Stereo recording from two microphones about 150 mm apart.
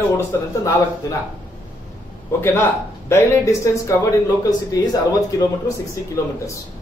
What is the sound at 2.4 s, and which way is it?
Speech, 15° left (ahead or behind).